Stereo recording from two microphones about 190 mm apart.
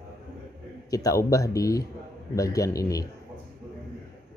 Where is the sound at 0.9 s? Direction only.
15° left (ahead or behind).